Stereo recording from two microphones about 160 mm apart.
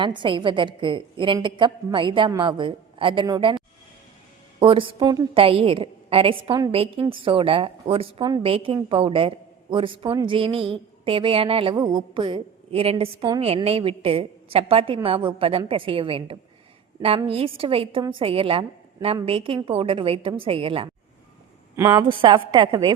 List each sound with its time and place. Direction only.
0.0 s a woman's voice: 30° right (ahead or behind)
4.6 s a woman's voice: 35° right (ahead or behind)
21.9 s a woman's voice: 30° right (ahead or behind)